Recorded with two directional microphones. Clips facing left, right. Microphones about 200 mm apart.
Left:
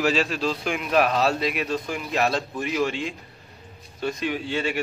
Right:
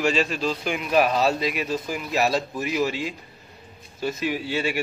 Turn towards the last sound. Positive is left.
turn(degrees=-10)  # may be behind; listen again after turning